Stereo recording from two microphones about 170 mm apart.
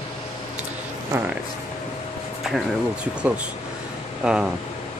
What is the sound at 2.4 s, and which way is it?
Speech, 5° right (ahead or behind).